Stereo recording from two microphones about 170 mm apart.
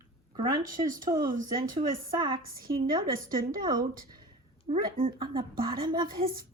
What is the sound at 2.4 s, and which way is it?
Speech, 60° right (ahead or behind).